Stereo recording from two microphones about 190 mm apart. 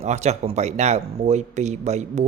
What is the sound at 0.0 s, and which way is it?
Speech, 35° right (ahead or behind).